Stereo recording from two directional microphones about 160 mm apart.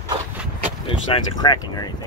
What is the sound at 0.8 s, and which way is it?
Speech, 30° left (ahead or behind).